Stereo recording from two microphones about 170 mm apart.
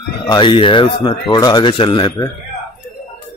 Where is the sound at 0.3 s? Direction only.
25° left (ahead or behind).